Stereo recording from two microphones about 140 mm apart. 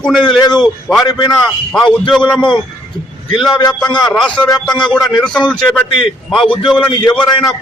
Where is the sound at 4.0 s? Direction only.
5° left (ahead or behind).